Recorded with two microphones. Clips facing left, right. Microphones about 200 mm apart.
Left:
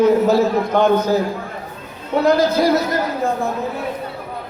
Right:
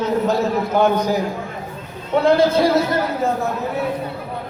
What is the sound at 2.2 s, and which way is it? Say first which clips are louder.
Speech: even; 25° right (ahead or behind).